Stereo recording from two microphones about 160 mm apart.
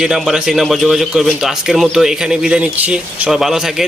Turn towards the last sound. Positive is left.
turn(degrees=-5)  # may be behind; listen again after turning